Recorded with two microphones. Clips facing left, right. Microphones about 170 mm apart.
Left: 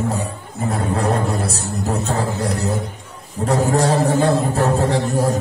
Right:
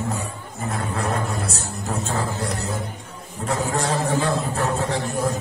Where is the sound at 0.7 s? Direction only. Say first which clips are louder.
Left 6 dB; 35° left (ahead or behind).